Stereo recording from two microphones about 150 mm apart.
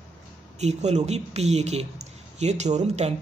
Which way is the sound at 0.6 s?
50° right (ahead or behind).